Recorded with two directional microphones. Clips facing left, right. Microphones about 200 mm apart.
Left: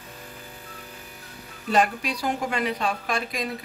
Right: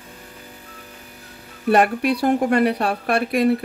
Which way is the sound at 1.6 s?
60° right (ahead or behind).